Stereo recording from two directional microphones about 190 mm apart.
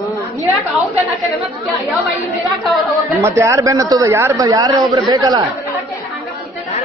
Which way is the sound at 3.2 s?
15° right (ahead or behind).